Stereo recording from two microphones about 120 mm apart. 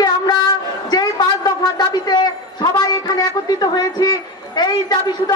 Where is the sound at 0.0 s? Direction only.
35° left (ahead or behind).